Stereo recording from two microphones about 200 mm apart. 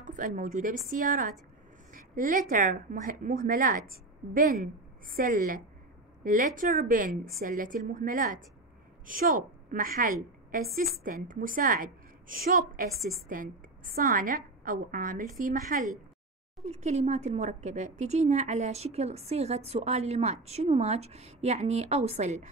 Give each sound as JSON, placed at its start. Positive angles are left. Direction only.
{"t": 0.0, "sound": "a woman's voice", "side_deg": -40}
{"t": 1.9, "sound": "a sound", "side_deg": -40}
{"t": 2.5, "sound": "a woman's voice", "side_deg": -40}